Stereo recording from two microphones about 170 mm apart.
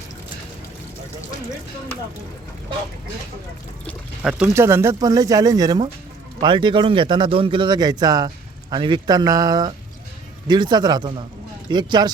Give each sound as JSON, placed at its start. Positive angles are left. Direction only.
{"t": 4.2, "sound": "a man's voice", "side_deg": -5}